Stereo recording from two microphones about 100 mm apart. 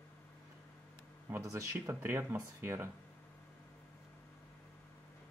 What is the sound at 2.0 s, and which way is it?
Speech, 20° right (ahead or behind).